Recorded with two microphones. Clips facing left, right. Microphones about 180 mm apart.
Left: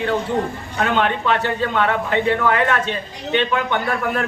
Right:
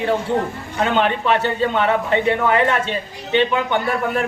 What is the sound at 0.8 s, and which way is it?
A man's voice, 25° right (ahead or behind).